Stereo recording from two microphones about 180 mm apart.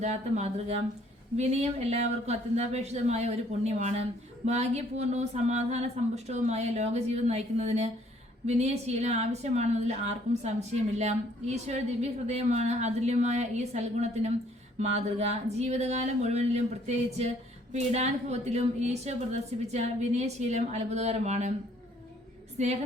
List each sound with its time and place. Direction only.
0.0 s speech: 40° right (ahead or behind)
22.5 s a woman's voice: 40° right (ahead or behind)